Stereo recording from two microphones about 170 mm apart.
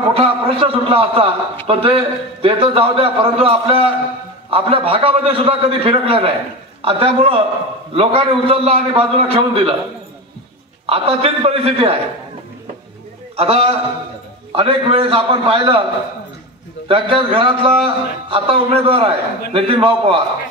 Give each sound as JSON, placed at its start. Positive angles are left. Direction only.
{"t": 0.1, "sound": "a man's voice", "side_deg": -35}
{"t": 10.9, "sound": "a man's voice", "side_deg": -35}
{"t": 13.4, "sound": "a man's voice", "side_deg": -35}
{"t": 16.8, "sound": "a man's voice", "side_deg": -30}